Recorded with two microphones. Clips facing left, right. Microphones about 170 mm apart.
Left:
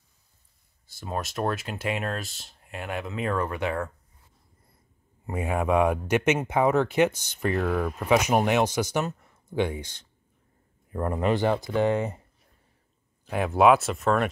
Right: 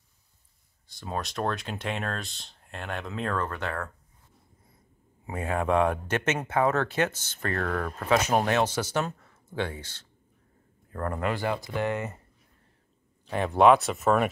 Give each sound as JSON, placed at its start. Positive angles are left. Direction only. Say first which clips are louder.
{"t": 0.9, "sound": "speech", "louder": "left 1 dB", "side_deg": 5}
{"t": 5.2, "sound": "a man's voice", "louder": "left 2 dB", "side_deg": 10}
{"t": 13.3, "sound": "speech", "louder": "even", "side_deg": 5}